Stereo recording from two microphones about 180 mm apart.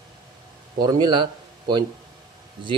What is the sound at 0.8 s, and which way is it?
Speech, 20° right (ahead or behind).